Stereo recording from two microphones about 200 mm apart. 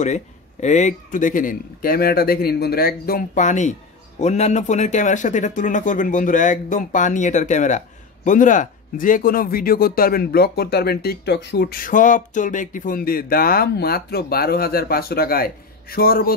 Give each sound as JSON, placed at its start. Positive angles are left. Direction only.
{"t": 0.0, "sound": "speech", "side_deg": 35}